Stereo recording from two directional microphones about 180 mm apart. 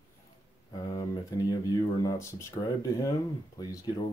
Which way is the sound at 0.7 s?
20° left (ahead or behind).